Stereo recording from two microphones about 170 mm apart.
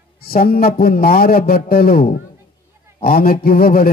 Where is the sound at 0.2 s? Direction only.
60° left (ahead or behind).